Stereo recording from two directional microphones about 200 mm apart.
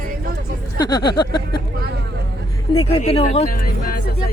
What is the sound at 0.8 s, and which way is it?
Speech, 20° left (ahead or behind).